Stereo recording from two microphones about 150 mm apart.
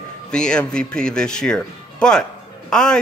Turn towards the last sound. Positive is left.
turn(degrees=5)  # may be behind; listen again after turning